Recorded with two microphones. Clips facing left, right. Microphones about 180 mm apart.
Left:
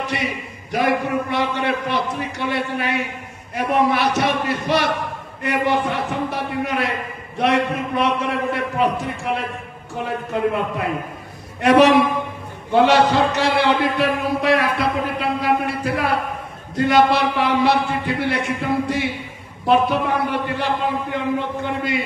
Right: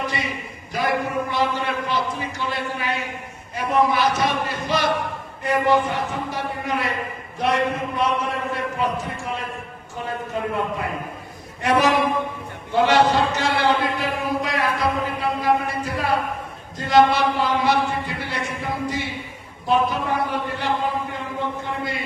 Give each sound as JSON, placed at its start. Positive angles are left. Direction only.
{"t": 0.0, "sound": "a man's voice", "side_deg": 70}
{"t": 10.3, "sound": "a man's voice", "side_deg": 70}